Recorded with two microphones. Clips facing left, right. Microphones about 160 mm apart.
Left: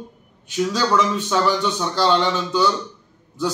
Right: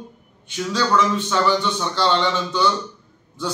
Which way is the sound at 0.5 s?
5° left (ahead or behind).